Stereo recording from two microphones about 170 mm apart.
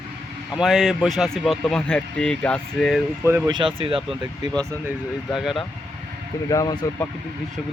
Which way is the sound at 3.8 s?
30° right (ahead or behind).